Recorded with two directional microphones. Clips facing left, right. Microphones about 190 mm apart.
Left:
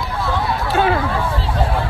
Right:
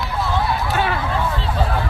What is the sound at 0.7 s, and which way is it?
Speech, 45° left (ahead or behind).